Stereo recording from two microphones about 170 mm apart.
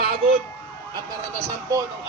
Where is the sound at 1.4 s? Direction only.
20° right (ahead or behind).